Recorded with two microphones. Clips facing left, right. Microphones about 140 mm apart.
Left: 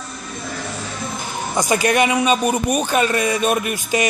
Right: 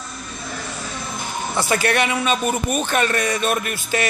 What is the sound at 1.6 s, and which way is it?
A man's voice, 15° left (ahead or behind).